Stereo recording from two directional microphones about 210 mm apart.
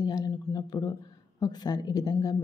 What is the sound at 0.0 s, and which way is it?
A man's voice, 20° left (ahead or behind).